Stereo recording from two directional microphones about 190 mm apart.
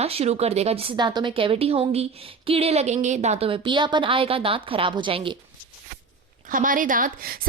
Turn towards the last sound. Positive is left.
turn(degrees=-50)  # may be behind; listen again after turning